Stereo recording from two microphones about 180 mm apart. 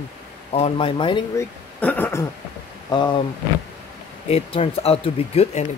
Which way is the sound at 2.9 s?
25° left (ahead or behind).